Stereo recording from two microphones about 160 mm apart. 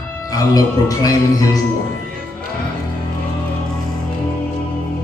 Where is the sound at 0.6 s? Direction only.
20° left (ahead or behind).